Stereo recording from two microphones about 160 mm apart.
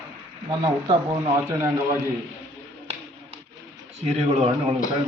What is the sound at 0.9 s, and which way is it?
Speech, 30° right (ahead or behind).